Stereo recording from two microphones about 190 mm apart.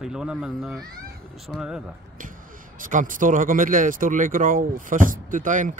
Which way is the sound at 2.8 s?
45° right (ahead or behind).